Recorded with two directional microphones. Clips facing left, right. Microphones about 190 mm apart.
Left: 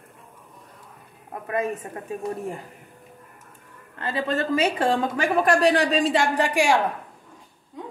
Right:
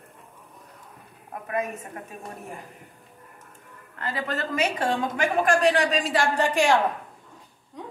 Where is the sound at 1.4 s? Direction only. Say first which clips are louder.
Left 3 dB; 30° left (ahead or behind).